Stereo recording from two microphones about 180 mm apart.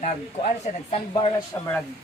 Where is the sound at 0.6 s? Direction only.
35° left (ahead or behind).